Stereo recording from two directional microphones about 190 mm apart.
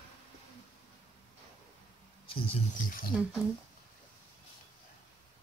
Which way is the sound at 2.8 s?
50° left (ahead or behind).